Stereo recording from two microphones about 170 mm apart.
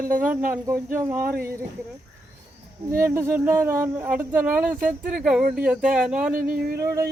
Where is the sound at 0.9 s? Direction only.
15° right (ahead or behind).